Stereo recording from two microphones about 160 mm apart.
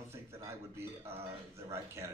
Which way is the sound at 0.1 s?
15° right (ahead or behind).